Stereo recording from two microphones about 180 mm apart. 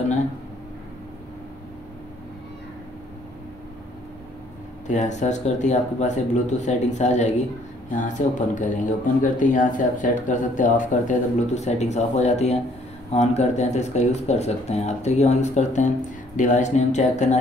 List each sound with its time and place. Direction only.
4.8 s speech: 40° left (ahead or behind)